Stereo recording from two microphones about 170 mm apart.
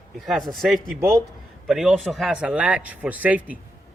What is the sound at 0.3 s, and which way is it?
Speech, centre (ahead or behind).